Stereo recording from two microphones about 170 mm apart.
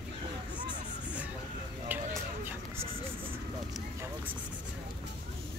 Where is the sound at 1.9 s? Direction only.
10° right (ahead or behind).